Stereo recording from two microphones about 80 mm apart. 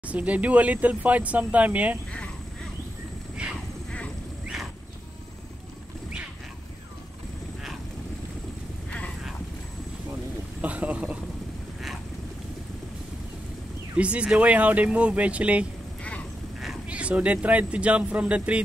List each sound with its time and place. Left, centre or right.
0.0 s speech: centre
10.6 s speech: centre
13.9 s speech: centre
16.0 s quack: centre
16.8 s speech: centre